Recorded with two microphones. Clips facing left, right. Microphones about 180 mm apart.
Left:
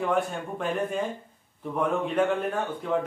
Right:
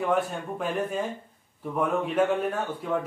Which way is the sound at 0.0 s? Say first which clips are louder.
Even; 5° right (ahead or behind).